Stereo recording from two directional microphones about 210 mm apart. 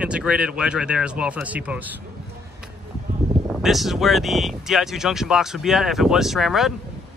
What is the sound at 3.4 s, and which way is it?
Speech, centre (ahead or behind).